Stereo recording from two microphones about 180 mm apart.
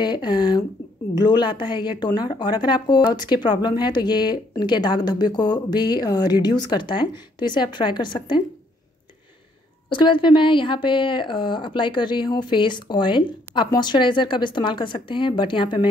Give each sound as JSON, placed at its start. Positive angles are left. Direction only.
{"t": 0.0, "sound": "speech", "side_deg": 25}
{"t": 9.8, "sound": "speech", "side_deg": 25}